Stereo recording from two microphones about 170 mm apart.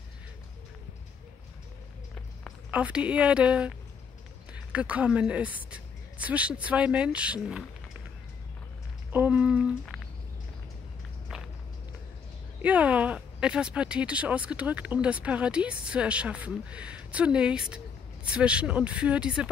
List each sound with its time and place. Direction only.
2.7 s speech: 5° right (ahead or behind)
9.1 s speech: 10° right (ahead or behind)
12.6 s speech: 10° right (ahead or behind)